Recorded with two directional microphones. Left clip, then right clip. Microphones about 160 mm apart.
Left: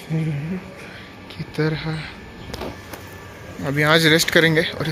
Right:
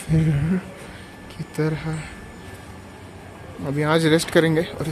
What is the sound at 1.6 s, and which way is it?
Speech, 10° right (ahead or behind).